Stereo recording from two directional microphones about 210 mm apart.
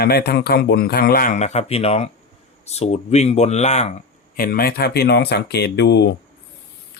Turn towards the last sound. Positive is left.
turn(degrees=55)  # may be behind; listen again after turning